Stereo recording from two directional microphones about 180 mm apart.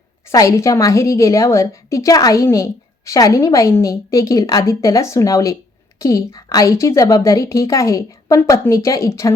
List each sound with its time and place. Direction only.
0.3 s a woman's voice: 15° left (ahead or behind)